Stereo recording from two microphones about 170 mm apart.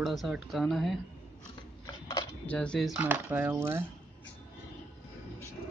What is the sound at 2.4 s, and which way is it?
Speech, 5° left (ahead or behind).